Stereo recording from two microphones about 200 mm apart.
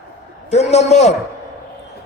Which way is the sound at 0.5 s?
35° left (ahead or behind).